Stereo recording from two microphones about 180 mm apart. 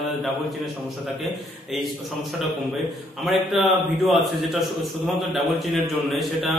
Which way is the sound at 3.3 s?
Centre (ahead or behind).